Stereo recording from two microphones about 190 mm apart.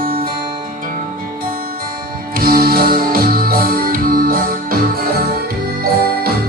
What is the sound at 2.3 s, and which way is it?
Music, 50° right (ahead or behind).